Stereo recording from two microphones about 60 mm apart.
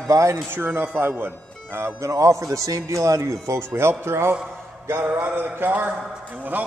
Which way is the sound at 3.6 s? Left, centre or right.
Right.